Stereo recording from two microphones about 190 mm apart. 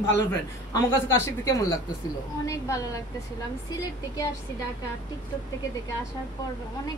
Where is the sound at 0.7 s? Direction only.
15° left (ahead or behind).